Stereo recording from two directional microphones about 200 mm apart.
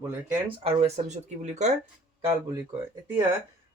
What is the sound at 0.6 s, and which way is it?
Speech, 35° right (ahead or behind).